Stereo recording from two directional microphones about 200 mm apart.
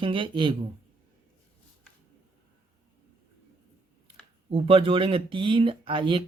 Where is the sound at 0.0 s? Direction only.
25° right (ahead or behind).